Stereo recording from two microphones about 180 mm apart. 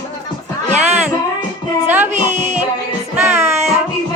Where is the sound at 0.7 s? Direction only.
40° right (ahead or behind).